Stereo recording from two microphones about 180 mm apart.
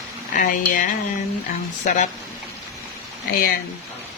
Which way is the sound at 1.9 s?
45° left (ahead or behind).